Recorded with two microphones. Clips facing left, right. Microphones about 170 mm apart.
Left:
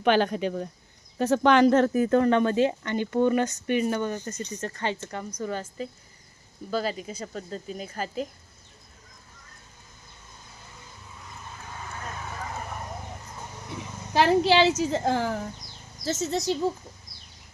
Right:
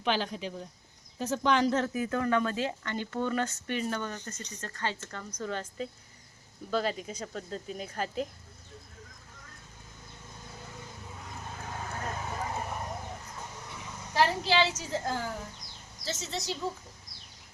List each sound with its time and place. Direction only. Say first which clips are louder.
0.0 s speech: left 9 dB; 60° left (ahead or behind)
2.1 s speech: left 7 dB; 30° left (ahead or behind)
5.4 s speech: left 2 dB; 5° left (ahead or behind)
11.3 s vehicle: right 2 dB; 50° right (ahead or behind)
12.2 s a sound: even; 20° right (ahead or behind)
14.1 s a woman's voice: left 7 dB; 80° left
16.0 s speech: left 9 dB; 45° left (ahead or behind)